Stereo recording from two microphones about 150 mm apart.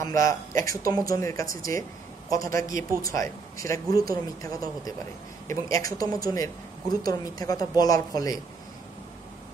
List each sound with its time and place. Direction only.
0.0 s speech: 20° left (ahead or behind)